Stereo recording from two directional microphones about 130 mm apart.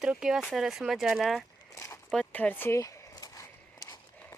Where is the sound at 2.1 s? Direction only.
5° left (ahead or behind); by 3.4 s 25° left (ahead or behind).